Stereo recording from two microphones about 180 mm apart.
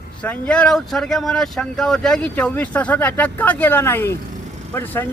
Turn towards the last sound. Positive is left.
turn(degrees=10)  # may be behind; listen again after turning